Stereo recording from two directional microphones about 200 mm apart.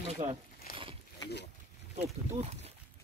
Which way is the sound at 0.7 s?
45° left (ahead or behind).